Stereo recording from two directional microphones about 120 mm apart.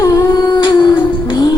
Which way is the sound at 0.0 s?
30° left (ahead or behind).